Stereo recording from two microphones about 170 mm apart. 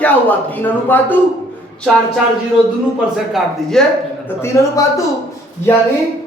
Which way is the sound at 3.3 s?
5° left (ahead or behind).